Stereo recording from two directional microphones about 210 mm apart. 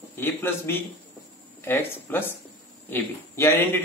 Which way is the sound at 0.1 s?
10° left (ahead or behind).